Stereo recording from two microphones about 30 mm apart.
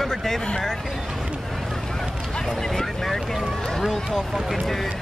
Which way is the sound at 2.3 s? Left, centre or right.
Centre.